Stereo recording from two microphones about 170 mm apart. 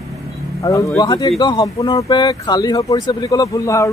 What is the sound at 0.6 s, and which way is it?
Speech, 20° left (ahead or behind).